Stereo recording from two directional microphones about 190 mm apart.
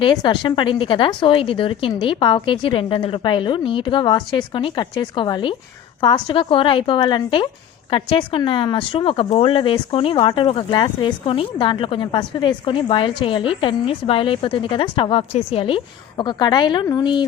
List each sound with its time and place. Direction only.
0.0 s speech: 25° left (ahead or behind)